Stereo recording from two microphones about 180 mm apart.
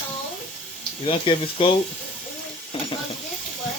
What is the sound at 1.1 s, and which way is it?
Speech, 30° left (ahead or behind).